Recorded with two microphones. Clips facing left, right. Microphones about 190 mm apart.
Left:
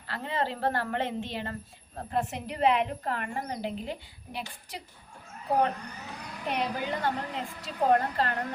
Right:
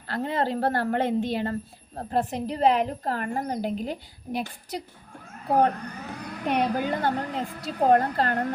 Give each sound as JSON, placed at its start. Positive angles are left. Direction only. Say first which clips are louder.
{"t": 0.1, "sound": "a woman's voice", "louder": "right 5 dB", "side_deg": -40}